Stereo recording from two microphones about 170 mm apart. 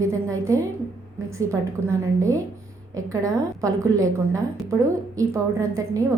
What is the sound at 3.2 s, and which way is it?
A woman's voice, 20° right (ahead or behind).